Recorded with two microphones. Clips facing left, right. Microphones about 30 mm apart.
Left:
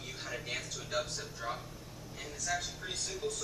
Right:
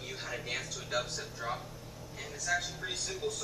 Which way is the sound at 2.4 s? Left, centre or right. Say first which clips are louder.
Right 3 dB; centre.